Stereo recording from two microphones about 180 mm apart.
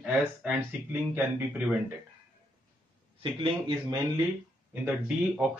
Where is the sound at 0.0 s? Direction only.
5° right (ahead or behind).